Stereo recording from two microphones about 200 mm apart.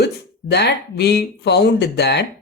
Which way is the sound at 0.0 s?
55° left (ahead or behind).